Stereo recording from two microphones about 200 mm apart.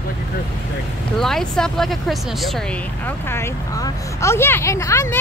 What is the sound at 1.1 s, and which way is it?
A woman's voice, centre (ahead or behind).